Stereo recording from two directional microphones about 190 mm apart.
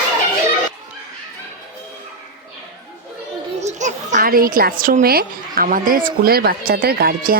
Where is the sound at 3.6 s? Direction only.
40° right (ahead or behind).